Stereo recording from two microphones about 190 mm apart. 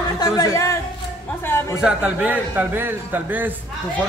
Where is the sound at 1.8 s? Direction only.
5° right (ahead or behind).